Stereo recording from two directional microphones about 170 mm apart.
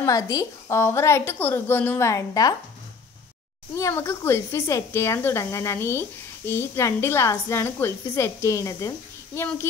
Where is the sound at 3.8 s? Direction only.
15° left (ahead or behind).